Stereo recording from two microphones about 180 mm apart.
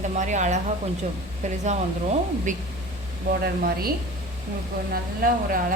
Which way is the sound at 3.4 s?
55° right (ahead or behind).